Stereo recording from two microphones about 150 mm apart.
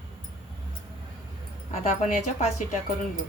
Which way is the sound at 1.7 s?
55° left (ahead or behind).